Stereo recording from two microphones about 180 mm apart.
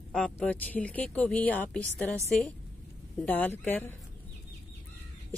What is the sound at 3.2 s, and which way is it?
Speech, 10° left (ahead or behind).